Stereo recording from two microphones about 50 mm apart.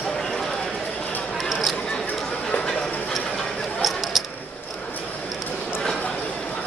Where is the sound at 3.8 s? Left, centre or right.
Centre.